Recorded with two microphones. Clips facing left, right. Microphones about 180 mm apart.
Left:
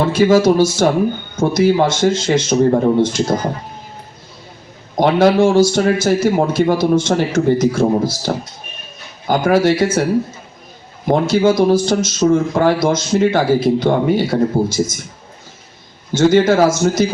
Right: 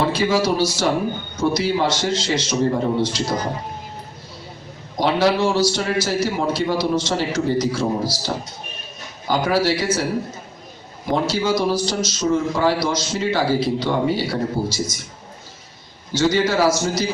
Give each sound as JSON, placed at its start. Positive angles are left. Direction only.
{"t": 0.0, "sound": "a man's voice", "side_deg": 45}
{"t": 4.9, "sound": "a man's voice", "side_deg": 55}
{"t": 11.3, "sound": "a man's voice", "side_deg": 50}
{"t": 16.1, "sound": "a man's voice", "side_deg": 50}